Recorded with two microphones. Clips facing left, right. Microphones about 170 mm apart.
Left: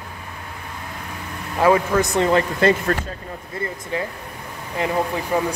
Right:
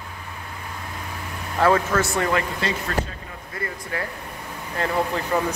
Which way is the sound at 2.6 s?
50° left (ahead or behind).